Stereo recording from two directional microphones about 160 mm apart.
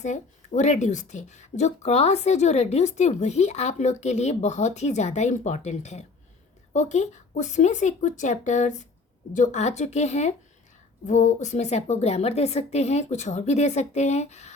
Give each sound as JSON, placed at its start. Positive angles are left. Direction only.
{"t": 0.0, "sound": "speech", "side_deg": 50}